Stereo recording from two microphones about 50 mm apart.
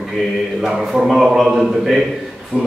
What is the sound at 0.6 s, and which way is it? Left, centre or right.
A man's voice, centre.